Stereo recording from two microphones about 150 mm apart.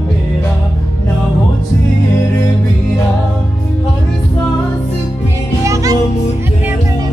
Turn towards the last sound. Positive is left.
turn(degrees=-20)  # may be behind; listen again after turning